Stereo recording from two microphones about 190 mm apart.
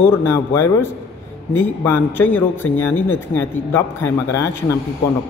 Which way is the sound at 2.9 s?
90° left.